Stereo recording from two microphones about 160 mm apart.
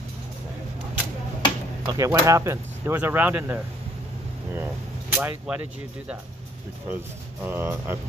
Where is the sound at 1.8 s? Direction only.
20° right (ahead or behind).